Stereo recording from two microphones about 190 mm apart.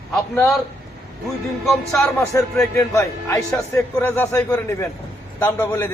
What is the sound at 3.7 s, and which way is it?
A man's voice, 10° left (ahead or behind).